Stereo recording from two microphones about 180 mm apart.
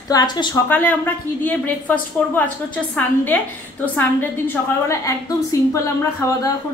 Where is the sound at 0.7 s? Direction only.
10° left (ahead or behind).